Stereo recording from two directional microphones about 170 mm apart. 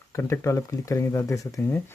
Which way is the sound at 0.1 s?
15° left (ahead or behind).